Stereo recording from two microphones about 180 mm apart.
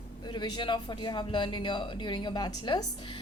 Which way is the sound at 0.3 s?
25° left (ahead or behind).